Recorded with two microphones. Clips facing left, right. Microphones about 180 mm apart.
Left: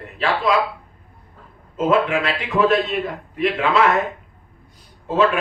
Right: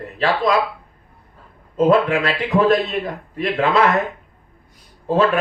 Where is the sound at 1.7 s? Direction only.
35° right (ahead or behind).